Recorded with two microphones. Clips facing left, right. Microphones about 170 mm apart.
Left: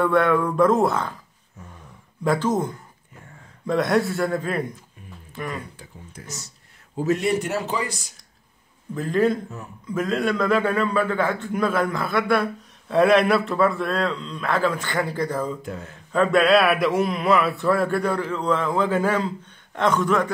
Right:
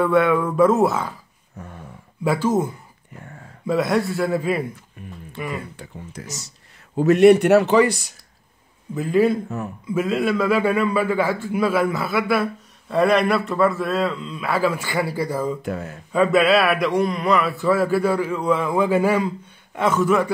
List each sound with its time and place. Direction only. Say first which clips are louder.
0.0 s speech: right 2 dB; 5° right (ahead or behind)
1.6 s a sound: right 6 dB; 60° right (ahead or behind)
2.2 s a man's voice: right 2 dB; 10° right (ahead or behind)
5.8 s speech: right 6 dB; 75° right (ahead or behind)
7.0 s speech: right 10 dB; 65° right (ahead or behind)
8.9 s a man's voice: right 3 dB; 10° right (ahead or behind)
15.6 s speech: right 6 dB; 70° right (ahead or behind)
16.1 s a man's voice: right 1 dB; 5° right (ahead or behind)